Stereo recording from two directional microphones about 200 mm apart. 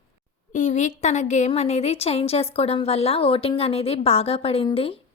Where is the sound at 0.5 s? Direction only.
40° left (ahead or behind).